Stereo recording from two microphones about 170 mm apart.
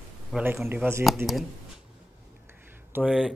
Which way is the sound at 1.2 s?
15° right (ahead or behind).